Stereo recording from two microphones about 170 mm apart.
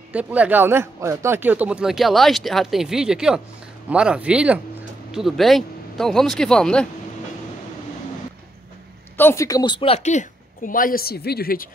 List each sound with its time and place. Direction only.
0.1 s speech: 10° right (ahead or behind)
9.1 s a woman's voice: 15° left (ahead or behind); by 11.7 s 60° left (ahead or behind)